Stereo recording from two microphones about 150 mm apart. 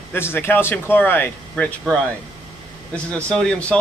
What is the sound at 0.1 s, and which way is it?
A man's voice, 15° left (ahead or behind).